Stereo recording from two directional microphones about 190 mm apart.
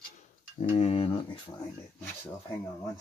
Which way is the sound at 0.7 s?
35° left (ahead or behind).